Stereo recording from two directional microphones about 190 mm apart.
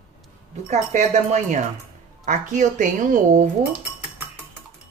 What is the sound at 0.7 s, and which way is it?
Speech, 40° right (ahead or behind).